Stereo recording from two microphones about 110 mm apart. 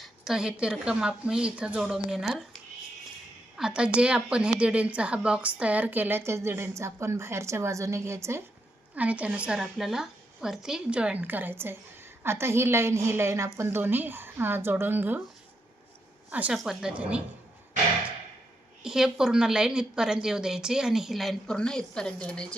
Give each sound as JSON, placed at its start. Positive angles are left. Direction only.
{"t": 0.0, "sound": "a woman's voice", "side_deg": -5}
{"t": 3.6, "sound": "a woman's voice", "side_deg": -10}
{"t": 9.0, "sound": "a woman's voice", "side_deg": -10}
{"t": 16.3, "sound": "a woman's voice", "side_deg": -15}
{"t": 18.8, "sound": "a woman's voice", "side_deg": -5}